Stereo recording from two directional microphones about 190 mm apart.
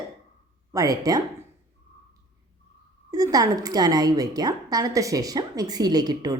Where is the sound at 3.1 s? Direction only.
20° right (ahead or behind).